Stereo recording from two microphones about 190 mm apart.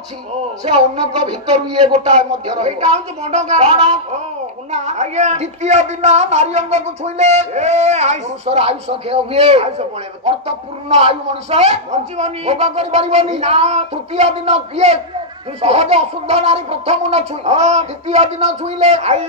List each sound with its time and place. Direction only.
0.6 s speech: 30° right (ahead or behind)
1.9 s speech: 35° right (ahead or behind)